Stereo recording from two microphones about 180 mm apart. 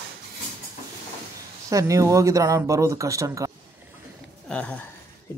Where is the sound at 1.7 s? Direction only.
20° right (ahead or behind).